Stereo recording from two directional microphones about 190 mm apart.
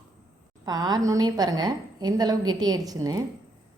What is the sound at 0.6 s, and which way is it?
A woman's voice, 20° right (ahead or behind).